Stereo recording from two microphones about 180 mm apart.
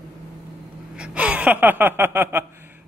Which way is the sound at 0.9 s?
5° right (ahead or behind).